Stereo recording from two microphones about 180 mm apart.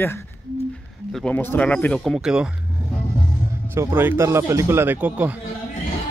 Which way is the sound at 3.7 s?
15° right (ahead or behind).